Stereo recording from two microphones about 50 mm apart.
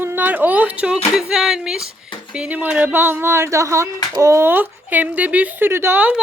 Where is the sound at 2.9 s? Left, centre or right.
Right.